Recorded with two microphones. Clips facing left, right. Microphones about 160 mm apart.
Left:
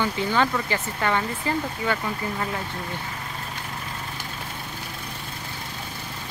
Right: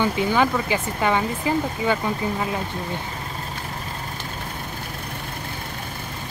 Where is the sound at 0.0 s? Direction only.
15° right (ahead or behind).